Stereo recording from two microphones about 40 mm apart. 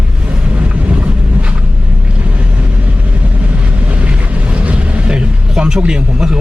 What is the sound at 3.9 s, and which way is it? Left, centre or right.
Vehicle, right.